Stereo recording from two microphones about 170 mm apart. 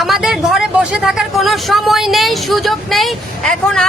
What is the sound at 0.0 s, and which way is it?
Speech, centre (ahead or behind).